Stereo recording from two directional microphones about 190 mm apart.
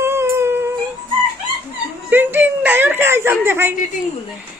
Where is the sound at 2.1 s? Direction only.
10° right (ahead or behind).